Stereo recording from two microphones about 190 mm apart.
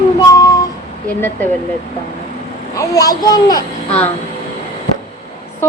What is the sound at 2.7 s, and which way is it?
Speech, 20° left (ahead or behind).